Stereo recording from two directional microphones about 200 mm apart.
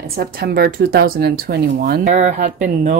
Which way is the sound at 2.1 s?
35° right (ahead or behind).